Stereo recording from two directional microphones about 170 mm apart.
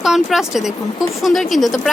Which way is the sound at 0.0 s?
Centre (ahead or behind).